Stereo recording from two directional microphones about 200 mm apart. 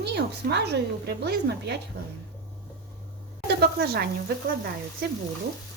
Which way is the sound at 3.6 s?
50° right (ahead or behind).